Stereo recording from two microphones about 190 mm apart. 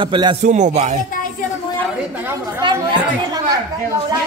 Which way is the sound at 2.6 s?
20° right (ahead or behind).